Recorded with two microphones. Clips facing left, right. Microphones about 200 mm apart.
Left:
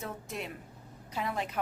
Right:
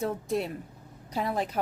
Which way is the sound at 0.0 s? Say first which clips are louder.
Right 10 dB; 35° right (ahead or behind).